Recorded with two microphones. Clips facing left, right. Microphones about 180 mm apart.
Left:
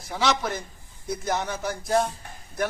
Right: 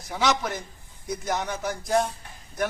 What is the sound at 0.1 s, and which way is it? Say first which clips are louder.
A man's voice: even; centre (ahead or behind).